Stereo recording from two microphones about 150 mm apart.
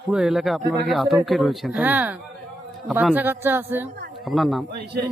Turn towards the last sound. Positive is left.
turn(degrees=-90)